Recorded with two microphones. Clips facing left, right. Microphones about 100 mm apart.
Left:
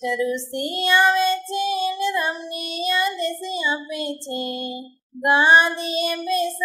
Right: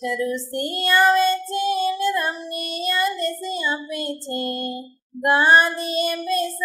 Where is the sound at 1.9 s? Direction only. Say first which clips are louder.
Right 1 dB; centre (ahead or behind).